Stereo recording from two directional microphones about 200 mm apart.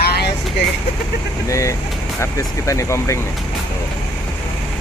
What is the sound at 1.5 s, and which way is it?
Speech, 15° left (ahead or behind).